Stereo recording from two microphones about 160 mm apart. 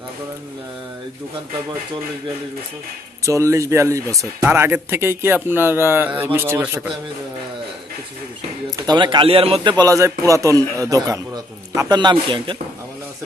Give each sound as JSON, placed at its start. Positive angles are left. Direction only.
{"t": 3.3, "sound": "speech", "side_deg": -20}
{"t": 8.6, "sound": "a man's voice", "side_deg": -25}